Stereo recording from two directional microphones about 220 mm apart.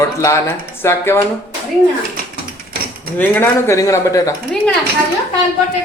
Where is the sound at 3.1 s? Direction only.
10° left (ahead or behind).